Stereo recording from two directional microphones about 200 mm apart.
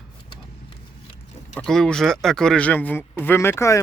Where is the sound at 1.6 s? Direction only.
5° left (ahead or behind).